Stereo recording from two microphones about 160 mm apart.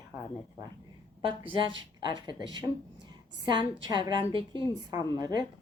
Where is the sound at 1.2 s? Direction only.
30° right (ahead or behind).